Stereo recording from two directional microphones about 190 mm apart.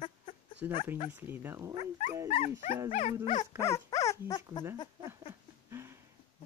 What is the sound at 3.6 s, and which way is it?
Dog, 15° left (ahead or behind).